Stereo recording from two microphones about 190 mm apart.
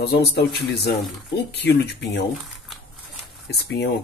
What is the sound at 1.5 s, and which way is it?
Speech, 65° left (ahead or behind).